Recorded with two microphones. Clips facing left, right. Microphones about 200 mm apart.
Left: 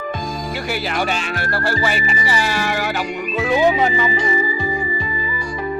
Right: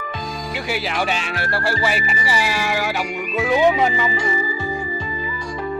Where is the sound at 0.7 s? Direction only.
Centre (ahead or behind).